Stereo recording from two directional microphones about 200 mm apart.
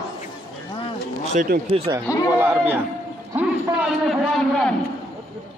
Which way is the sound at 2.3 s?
10° right (ahead or behind).